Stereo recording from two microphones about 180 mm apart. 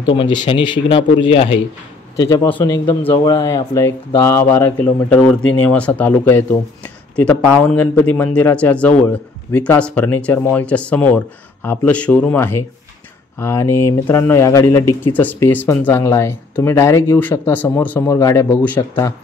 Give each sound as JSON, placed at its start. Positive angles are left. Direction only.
{"t": 0.1, "sound": "speech", "side_deg": 25}
{"t": 2.1, "sound": "a man's voice", "side_deg": 20}
{"t": 2.4, "sound": "speech", "side_deg": 10}
{"t": 3.1, "sound": "speech", "side_deg": 25}